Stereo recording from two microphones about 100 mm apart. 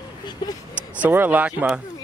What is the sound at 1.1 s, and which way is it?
Speech, 15° right (ahead or behind).